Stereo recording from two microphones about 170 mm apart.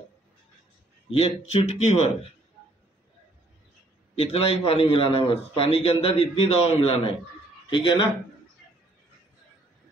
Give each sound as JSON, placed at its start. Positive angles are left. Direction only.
{"t": 1.1, "sound": "a man's voice", "side_deg": 35}
{"t": 4.1, "sound": "a man's voice", "side_deg": 35}